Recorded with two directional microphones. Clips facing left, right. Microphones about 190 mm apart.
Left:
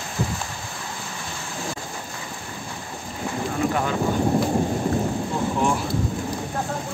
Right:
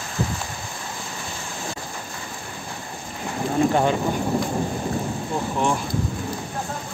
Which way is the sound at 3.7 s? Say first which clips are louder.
Right 4 dB; 25° right (ahead or behind).